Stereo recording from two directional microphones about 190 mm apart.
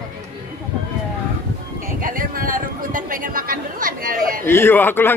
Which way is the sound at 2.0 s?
50° right (ahead or behind).